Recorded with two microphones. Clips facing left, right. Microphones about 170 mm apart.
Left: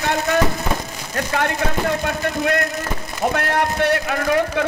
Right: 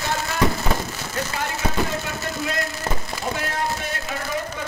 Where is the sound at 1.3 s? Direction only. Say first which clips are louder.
Left 6 dB; 65° left (ahead or behind).